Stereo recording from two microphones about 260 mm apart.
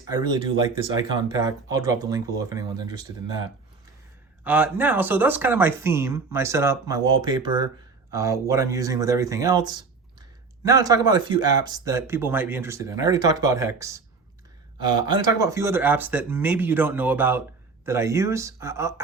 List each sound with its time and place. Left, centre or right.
0.1 s speech: centre
4.4 s speech: centre
15.0 s speech: centre